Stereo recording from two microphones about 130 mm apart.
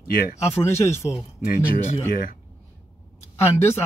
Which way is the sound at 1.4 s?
90° left.